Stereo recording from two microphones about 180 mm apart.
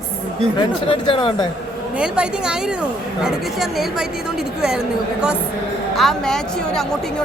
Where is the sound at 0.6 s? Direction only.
30° left (ahead or behind).